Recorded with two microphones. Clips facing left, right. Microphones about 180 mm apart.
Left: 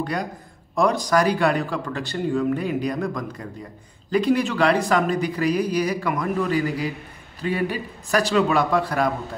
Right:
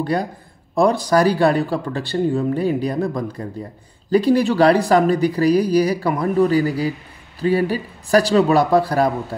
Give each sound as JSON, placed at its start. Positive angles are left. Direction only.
{"t": 0.0, "sound": "speech", "side_deg": -30}